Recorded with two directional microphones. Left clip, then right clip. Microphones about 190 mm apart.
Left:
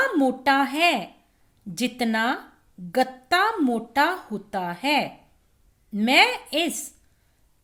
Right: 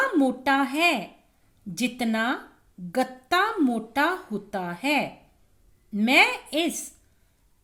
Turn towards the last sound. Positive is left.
turn(degrees=15)  # may be behind; listen again after turning